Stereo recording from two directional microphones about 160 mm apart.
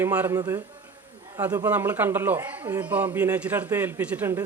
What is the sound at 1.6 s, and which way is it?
Speech, 10° right (ahead or behind).